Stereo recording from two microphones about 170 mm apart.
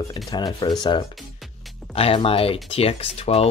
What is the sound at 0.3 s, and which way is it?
Speech, 25° left (ahead or behind).